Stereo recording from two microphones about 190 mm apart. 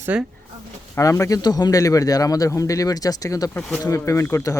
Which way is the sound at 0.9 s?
15° left (ahead or behind).